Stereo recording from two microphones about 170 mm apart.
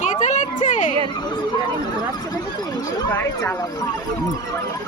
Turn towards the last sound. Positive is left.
turn(degrees=15)  # may be behind; listen again after turning